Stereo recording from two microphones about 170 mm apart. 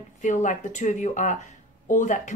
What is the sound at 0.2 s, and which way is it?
Speech, 45° left (ahead or behind).